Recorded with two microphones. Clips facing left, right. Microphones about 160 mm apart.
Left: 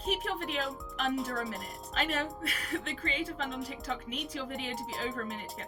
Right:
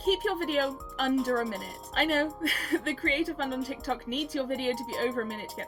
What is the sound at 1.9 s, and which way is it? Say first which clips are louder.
Speech: right 6 dB; 35° right (ahead or behind).